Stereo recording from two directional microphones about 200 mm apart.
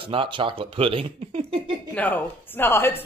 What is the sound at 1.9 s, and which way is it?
Speech, 10° left (ahead or behind).